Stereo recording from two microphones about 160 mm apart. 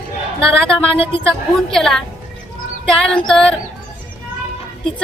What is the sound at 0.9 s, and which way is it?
Speech, 35° left (ahead or behind).